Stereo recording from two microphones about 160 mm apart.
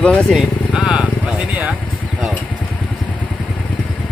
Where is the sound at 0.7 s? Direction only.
5° right (ahead or behind).